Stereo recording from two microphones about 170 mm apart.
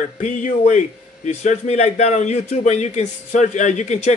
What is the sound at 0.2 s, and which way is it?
A man's voice, 45° left (ahead or behind).